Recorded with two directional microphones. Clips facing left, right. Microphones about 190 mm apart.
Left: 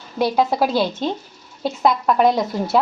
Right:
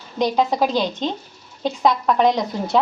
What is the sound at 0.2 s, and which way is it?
A woman's voice, 10° left (ahead or behind).